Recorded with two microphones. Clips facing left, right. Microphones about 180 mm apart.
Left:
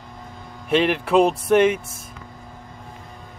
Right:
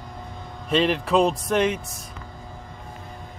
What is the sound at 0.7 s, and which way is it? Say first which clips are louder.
Speech: left 2 dB; 65° left (ahead or behind).